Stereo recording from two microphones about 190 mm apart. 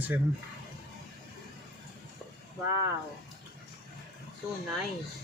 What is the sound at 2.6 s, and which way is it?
Speech, 15° right (ahead or behind).